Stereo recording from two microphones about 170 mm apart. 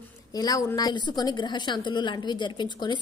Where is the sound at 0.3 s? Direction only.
20° left (ahead or behind).